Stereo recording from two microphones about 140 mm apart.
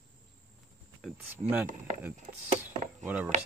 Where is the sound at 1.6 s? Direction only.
60° right (ahead or behind).